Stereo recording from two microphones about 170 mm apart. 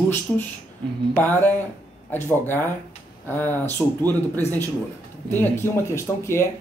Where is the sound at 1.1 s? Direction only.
10° left (ahead or behind).